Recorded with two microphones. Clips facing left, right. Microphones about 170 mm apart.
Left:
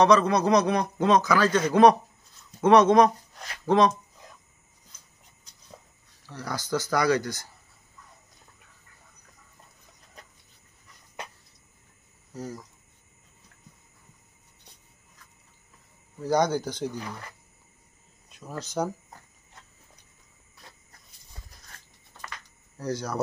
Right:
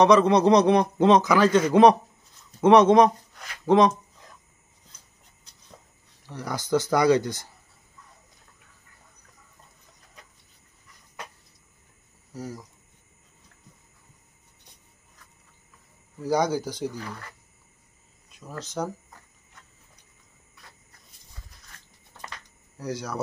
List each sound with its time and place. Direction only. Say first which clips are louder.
0.0 s a man's voice: right 3 dB; 20° right (ahead or behind)
6.2 s a man's voice: right 2 dB; 20° right (ahead or behind)
16.2 s speech: even; 5° right (ahead or behind)
18.6 s speech: left 2 dB; centre (ahead or behind)
22.8 s speech: left 2 dB; 5° right (ahead or behind)